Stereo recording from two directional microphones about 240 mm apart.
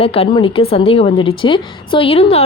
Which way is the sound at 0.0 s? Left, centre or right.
Left.